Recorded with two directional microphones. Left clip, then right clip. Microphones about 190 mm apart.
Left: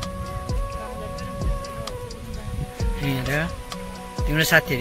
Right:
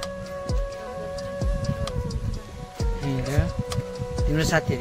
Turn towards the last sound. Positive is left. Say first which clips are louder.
# left 5 dB
turn(degrees=-10)  # may be behind; listen again after turning